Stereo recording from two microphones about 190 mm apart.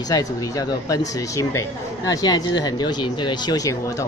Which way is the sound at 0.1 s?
20° left (ahead or behind).